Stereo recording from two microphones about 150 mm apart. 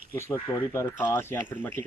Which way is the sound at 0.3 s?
20° left (ahead or behind).